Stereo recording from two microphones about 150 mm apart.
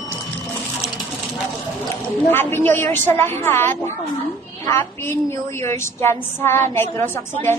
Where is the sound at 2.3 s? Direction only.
15° left (ahead or behind).